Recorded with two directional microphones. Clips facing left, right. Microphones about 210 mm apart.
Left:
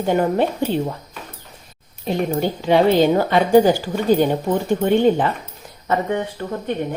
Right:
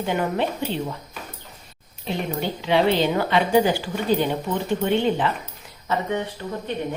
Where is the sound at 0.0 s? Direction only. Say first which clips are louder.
Left 6 dB; 40° left (ahead or behind).